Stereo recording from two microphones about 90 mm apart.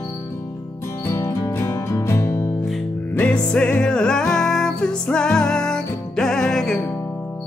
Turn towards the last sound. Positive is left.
turn(degrees=5)  # may be behind; listen again after turning